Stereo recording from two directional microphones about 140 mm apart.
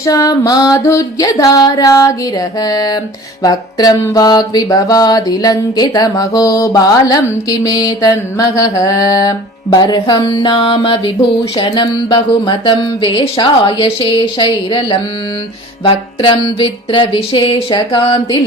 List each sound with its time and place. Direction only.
0.0 s mantra: 25° left (ahead or behind); by 11.1 s 40° left (ahead or behind)
11.5 s speech: 35° left (ahead or behind)